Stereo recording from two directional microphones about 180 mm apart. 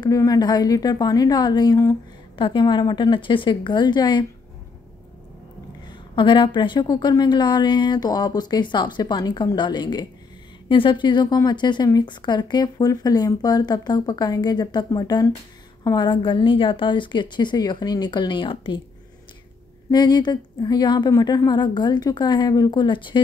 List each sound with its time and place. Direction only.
0.0 s a woman's voice: 20° left (ahead or behind)
5.9 s a woman's voice: 25° left (ahead or behind)
19.9 s a woman's voice: 25° left (ahead or behind)